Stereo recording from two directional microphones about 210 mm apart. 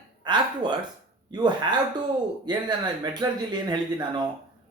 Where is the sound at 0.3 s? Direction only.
20° right (ahead or behind).